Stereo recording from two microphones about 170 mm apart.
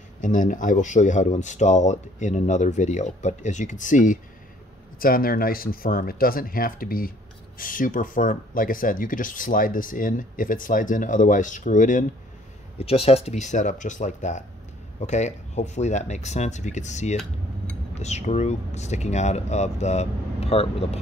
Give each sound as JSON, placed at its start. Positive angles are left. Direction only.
{"t": 0.2, "sound": "speech", "side_deg": 50}
{"t": 12.7, "sound": "speech", "side_deg": 35}